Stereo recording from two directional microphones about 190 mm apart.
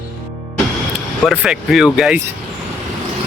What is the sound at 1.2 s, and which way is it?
Speech, 5° right (ahead or behind).